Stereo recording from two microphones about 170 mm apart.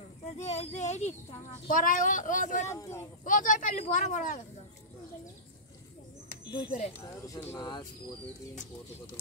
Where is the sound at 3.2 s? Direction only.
50° left (ahead or behind).